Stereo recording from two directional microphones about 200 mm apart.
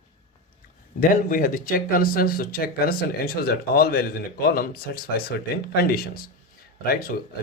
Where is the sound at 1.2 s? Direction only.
45° left (ahead or behind).